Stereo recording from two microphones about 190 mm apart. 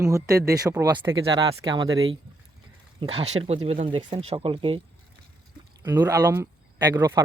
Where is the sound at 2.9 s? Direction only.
30° right (ahead or behind).